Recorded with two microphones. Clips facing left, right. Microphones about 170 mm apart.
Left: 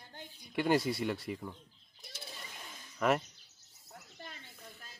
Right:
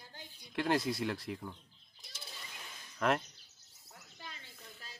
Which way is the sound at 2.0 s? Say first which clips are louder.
Left 4 dB; 60° left (ahead or behind).